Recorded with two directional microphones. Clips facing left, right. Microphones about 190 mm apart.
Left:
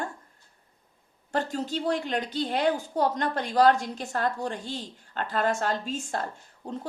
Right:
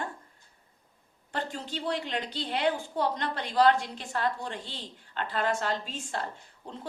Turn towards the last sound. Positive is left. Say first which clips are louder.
# left 7 dB
turn(degrees=45)  # may be behind; listen again after turning